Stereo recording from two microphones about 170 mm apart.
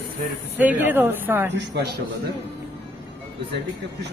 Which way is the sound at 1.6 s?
75° right (ahead or behind).